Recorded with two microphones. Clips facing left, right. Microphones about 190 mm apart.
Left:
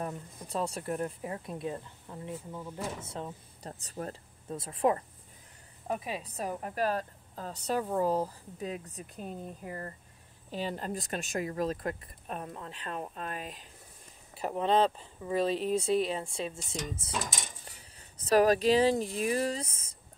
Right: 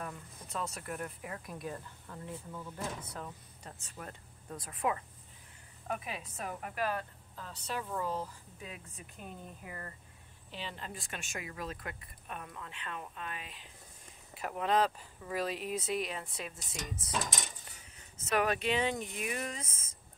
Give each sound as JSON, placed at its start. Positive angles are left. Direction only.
{"t": 0.0, "sound": "a woman's voice", "side_deg": 30}
{"t": 14.4, "sound": "speech", "side_deg": 30}
{"t": 18.1, "sound": "a woman's voice", "side_deg": 35}